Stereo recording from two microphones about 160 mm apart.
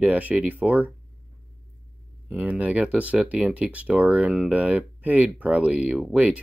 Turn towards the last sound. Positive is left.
turn(degrees=-10)  # may be behind; listen again after turning